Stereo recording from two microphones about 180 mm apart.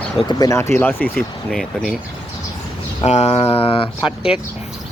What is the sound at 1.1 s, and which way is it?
Speech, centre (ahead or behind).